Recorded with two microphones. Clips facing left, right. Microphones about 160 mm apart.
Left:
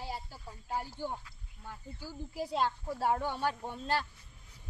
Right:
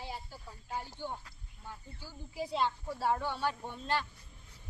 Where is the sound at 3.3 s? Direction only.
45° left (ahead or behind).